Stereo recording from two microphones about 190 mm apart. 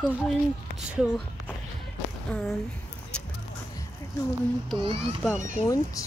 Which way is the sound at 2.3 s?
5° left (ahead or behind).